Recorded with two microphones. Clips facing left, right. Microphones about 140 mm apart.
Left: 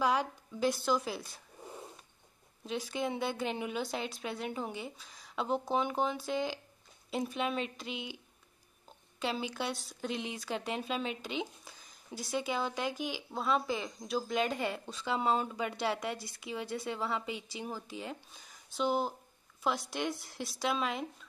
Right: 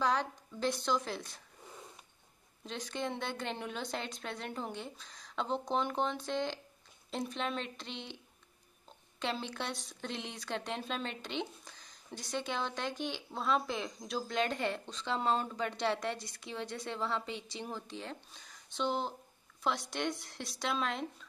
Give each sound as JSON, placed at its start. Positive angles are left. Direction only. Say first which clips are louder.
{"t": 0.0, "sound": "a woman's voice", "louder": "left 2 dB", "side_deg": 10}
{"t": 1.6, "sound": "a sound", "louder": "left 6 dB", "side_deg": 25}
{"t": 2.6, "sound": "speech", "louder": "left 3 dB", "side_deg": 5}
{"t": 9.2, "sound": "speech", "louder": "left 2 dB", "side_deg": 5}